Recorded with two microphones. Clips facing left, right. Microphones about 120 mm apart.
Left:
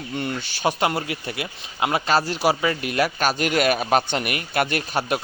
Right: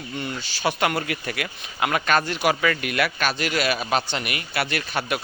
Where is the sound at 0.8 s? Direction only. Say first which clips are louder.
Left 1 dB; 25° left (ahead or behind).